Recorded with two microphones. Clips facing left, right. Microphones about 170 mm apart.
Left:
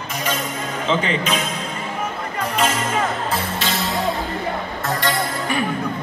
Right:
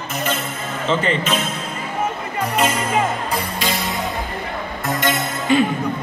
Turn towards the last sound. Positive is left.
turn(degrees=-25)  # may be behind; listen again after turning